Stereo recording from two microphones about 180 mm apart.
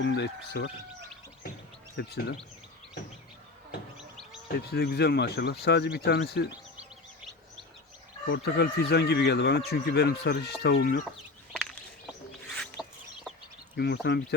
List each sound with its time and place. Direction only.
0.0 s speech: 65° left (ahead or behind)
2.0 s speech: 65° left (ahead or behind)
4.5 s speech: 60° left (ahead or behind)
8.3 s speech: 65° left (ahead or behind)
12.8 s chicken: 5° right (ahead or behind)
13.3 s a sound: centre (ahead or behind)
13.7 s speech: 65° left (ahead or behind)